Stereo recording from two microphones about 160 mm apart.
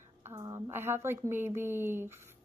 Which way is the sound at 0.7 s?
15° right (ahead or behind).